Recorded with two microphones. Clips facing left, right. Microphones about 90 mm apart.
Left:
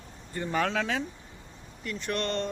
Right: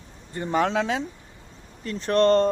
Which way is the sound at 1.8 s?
35° right (ahead or behind).